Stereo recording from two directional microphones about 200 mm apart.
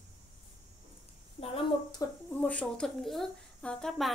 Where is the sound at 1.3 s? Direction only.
25° left (ahead or behind).